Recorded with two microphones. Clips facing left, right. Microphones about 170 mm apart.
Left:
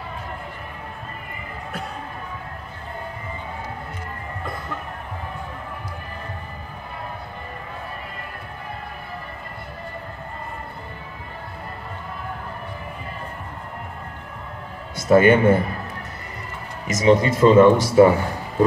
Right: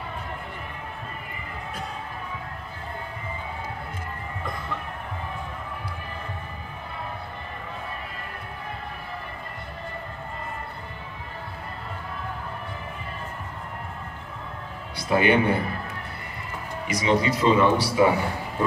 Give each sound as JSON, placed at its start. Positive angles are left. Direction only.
{"t": 15.0, "sound": "speech", "side_deg": 45}
{"t": 16.8, "sound": "speech", "side_deg": 45}